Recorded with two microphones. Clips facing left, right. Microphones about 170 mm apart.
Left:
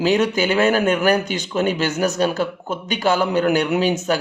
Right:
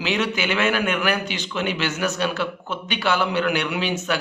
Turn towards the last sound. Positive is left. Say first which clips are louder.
# left 6 dB
turn(degrees=40)  # may be behind; listen again after turning